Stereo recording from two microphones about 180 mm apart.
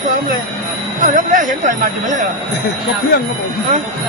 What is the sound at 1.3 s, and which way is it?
Speech, 45° right (ahead or behind).